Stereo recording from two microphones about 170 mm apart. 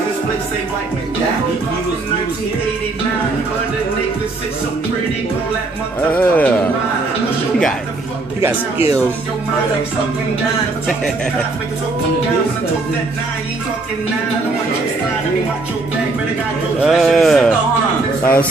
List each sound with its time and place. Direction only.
6.0 s speech: 10° left (ahead or behind)
16.8 s a man's voice: centre (ahead or behind)